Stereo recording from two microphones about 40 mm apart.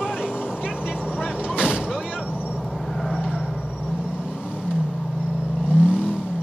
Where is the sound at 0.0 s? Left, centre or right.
Centre.